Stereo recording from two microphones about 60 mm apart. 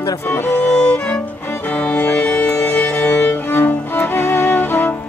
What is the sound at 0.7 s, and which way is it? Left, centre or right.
Music, centre.